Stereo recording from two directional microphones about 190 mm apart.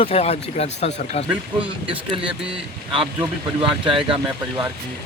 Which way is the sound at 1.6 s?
25° right (ahead or behind).